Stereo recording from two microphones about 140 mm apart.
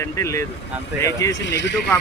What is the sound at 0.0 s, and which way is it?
Speech, 20° left (ahead or behind).